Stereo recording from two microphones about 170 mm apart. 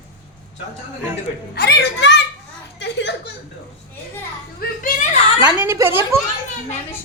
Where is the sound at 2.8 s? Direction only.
90° left.